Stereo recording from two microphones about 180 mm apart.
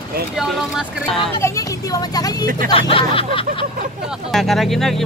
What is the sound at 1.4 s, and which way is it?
Speech, 15° left (ahead or behind).